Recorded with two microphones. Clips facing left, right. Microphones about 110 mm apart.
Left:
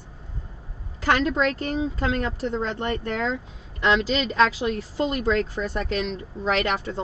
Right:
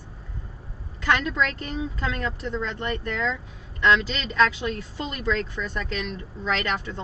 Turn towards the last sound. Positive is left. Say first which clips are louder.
# left 3 dB
turn(degrees=30)  # may be behind; listen again after turning